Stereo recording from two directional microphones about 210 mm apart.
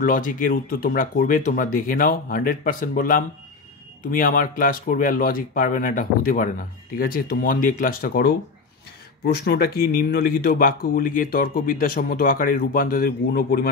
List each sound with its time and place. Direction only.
0.0 s speech: 40° left (ahead or behind)